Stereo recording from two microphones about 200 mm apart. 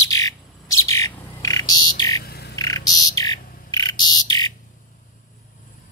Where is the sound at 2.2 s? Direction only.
55° left (ahead or behind).